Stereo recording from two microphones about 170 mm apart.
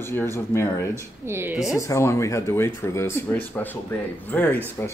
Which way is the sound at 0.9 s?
15° right (ahead or behind).